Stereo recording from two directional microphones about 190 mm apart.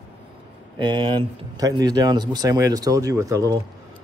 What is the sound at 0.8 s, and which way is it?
A man's voice, 25° right (ahead or behind).